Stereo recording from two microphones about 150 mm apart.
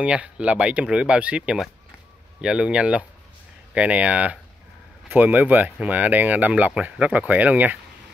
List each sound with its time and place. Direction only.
0.0 s speech: 10° right (ahead or behind)